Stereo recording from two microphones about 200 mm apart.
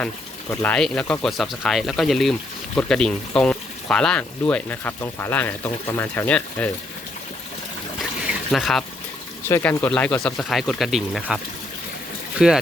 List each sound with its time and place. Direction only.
0.5 s speech: 10° left (ahead or behind)
8.4 s speech: centre (ahead or behind)
12.4 s speech: 5° right (ahead or behind)